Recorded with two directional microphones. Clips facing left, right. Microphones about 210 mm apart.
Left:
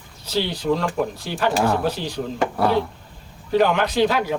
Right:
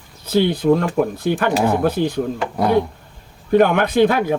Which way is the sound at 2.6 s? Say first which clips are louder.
Right 4 dB; 15° right (ahead or behind).